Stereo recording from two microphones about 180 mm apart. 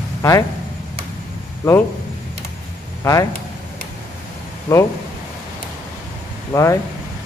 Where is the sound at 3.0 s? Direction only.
20° left (ahead or behind).